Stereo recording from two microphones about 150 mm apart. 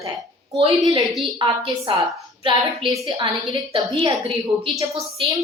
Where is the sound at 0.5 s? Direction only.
40° right (ahead or behind).